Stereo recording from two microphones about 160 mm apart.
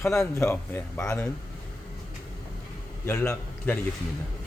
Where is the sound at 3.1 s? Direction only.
15° left (ahead or behind).